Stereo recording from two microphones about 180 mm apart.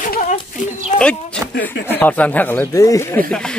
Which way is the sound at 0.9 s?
5° left (ahead or behind).